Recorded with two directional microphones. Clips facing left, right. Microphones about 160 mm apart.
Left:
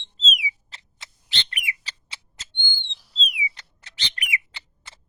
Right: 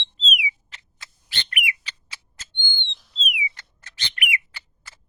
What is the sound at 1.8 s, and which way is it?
Bird, 35° left (ahead or behind).